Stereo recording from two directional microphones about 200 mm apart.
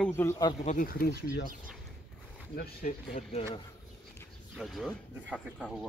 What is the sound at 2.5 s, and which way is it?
Speech, 50° left (ahead or behind).